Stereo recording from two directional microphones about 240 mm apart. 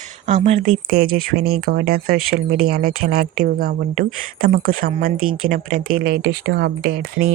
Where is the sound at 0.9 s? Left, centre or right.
Right.